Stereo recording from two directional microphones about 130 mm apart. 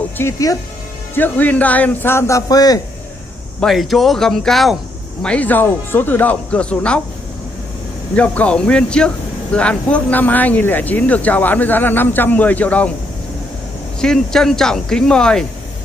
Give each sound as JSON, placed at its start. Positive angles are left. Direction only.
{"t": 0.2, "sound": "speech", "side_deg": 25}
{"t": 1.1, "sound": "speech", "side_deg": 15}
{"t": 3.6, "sound": "speech", "side_deg": 0}
{"t": 8.2, "sound": "speech", "side_deg": 10}
{"t": 14.0, "sound": "speech", "side_deg": 5}